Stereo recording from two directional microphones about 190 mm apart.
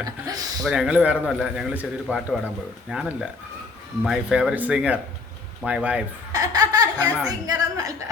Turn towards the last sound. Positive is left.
turn(degrees=-20)  # may be behind; listen again after turning